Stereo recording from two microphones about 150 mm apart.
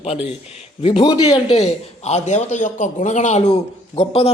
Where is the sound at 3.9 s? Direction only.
40° left (ahead or behind).